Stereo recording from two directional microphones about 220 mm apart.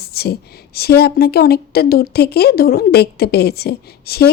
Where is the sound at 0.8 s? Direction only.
45° left (ahead or behind).